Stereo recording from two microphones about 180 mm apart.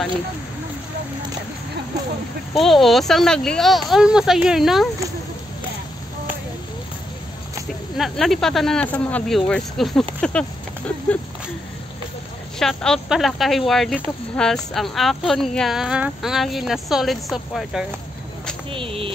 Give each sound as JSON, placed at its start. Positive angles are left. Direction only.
{"t": 2.5, "sound": "speech", "side_deg": 0}
{"t": 8.0, "sound": "speech", "side_deg": 0}
{"t": 12.5, "sound": "speech", "side_deg": 5}
{"t": 18.7, "sound": "speech", "side_deg": -30}